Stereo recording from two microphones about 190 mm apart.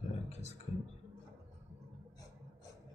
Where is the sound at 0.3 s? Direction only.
35° left (ahead or behind).